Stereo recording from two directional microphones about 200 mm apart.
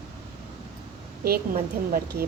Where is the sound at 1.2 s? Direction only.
50° right (ahead or behind).